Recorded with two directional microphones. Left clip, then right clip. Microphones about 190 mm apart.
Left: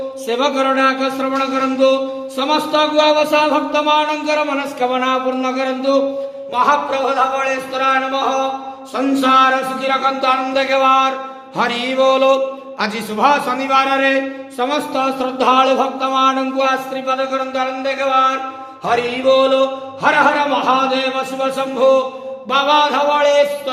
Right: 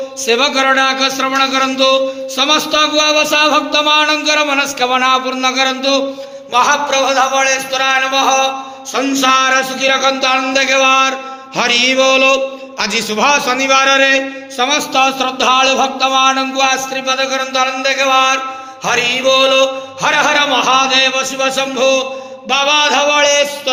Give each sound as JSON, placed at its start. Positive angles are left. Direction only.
{"t": 0.3, "sound": "speech", "side_deg": -10}